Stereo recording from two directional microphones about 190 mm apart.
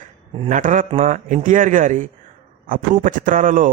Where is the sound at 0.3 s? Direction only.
40° right (ahead or behind).